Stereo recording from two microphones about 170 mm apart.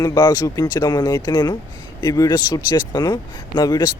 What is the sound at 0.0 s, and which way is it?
Speech, 20° left (ahead or behind).